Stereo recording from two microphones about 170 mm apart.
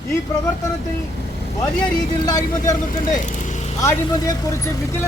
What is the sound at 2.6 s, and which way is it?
Speech, 45° left (ahead or behind).